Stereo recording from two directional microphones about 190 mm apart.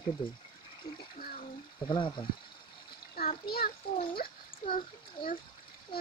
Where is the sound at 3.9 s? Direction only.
50° left (ahead or behind).